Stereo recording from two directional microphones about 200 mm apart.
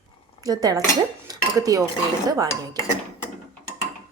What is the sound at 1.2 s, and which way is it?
Cutlery, 20° right (ahead or behind).